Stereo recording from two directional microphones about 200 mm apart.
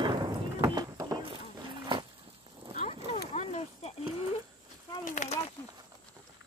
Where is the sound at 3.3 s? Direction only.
30° left (ahead or behind).